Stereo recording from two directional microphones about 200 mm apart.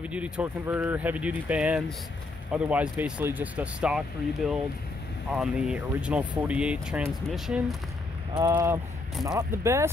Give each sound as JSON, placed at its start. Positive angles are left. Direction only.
{"t": 0.0, "sound": "speech", "side_deg": -5}
{"t": 8.4, "sound": "speech", "side_deg": -20}
{"t": 9.1, "sound": "speech", "side_deg": 0}
{"t": 9.4, "sound": "speech", "side_deg": -15}